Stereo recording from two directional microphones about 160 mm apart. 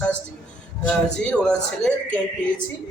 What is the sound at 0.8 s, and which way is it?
A man's voice, 5° left (ahead or behind).